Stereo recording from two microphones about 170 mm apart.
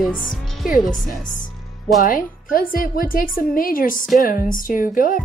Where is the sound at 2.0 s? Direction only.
55° left (ahead or behind).